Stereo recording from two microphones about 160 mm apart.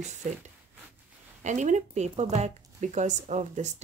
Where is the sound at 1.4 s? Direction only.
50° right (ahead or behind).